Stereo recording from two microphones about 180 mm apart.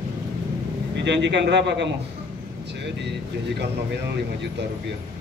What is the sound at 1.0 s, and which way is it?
A man's voice, 75° right (ahead or behind).